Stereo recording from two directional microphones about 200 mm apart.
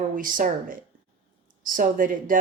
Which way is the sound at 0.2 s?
45° right (ahead or behind).